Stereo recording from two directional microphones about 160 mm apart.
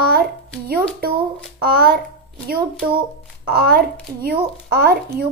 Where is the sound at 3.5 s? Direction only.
75° right (ahead or behind).